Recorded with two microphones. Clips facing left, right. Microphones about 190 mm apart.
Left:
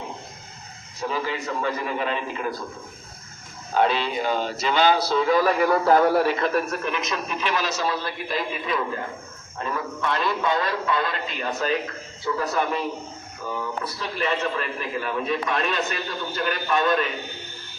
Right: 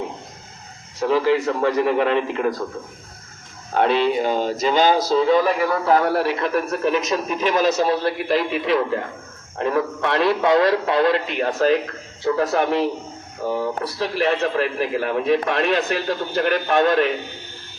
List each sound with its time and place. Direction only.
1.0 s a man's voice: 80° right
3.8 s a man's voice: 60° right (ahead or behind); by 5.2 s 40° right (ahead or behind)
5.2 s a man's voice: 25° right (ahead or behind)
5.8 s a man's voice: centre (ahead or behind)
6.7 s a man's voice: 35° right (ahead or behind); by 16.0 s 70° right (ahead or behind)
16.0 s a man's voice: 60° right (ahead or behind)